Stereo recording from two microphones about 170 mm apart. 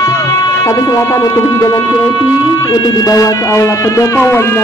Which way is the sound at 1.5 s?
20° left (ahead or behind).